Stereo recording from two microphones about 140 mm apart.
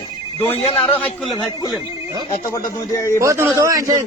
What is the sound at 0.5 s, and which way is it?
Speech, 45° left (ahead or behind).